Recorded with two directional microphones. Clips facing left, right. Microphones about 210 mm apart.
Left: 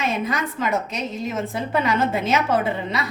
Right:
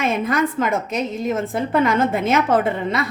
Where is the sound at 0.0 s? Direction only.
50° right (ahead or behind).